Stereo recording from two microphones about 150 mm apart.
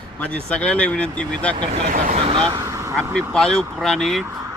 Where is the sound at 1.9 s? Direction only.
55° right (ahead or behind).